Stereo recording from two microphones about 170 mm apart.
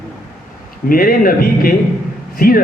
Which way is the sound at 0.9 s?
55° left (ahead or behind).